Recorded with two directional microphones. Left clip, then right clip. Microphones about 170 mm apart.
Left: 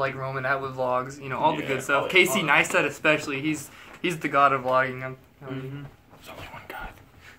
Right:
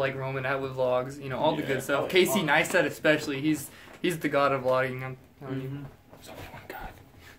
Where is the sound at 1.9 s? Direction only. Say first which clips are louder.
Left 4 dB; 10° right (ahead or behind).